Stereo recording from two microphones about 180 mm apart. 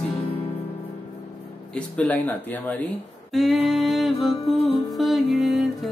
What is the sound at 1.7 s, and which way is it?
Speech, 5° left (ahead or behind).